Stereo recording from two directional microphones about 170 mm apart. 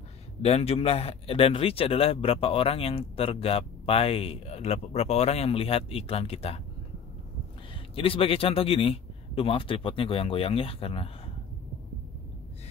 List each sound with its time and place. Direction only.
0.4 s a man's voice: 40° left (ahead or behind)
7.9 s a man's voice: 35° left (ahead or behind)